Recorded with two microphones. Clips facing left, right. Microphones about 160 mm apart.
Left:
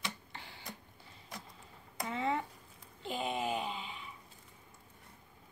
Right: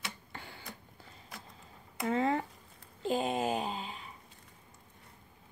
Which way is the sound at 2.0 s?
45° right (ahead or behind).